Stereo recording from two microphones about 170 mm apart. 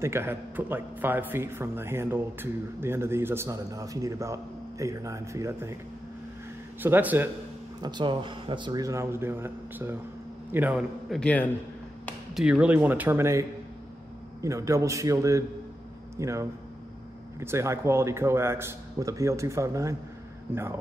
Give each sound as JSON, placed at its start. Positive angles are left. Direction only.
{"t": 0.0, "sound": "speech", "side_deg": -15}
{"t": 6.8, "sound": "speech", "side_deg": -10}
{"t": 7.8, "sound": "a man's voice", "side_deg": -25}
{"t": 11.1, "sound": "a man's voice", "side_deg": 10}
{"t": 12.4, "sound": "speech", "side_deg": -5}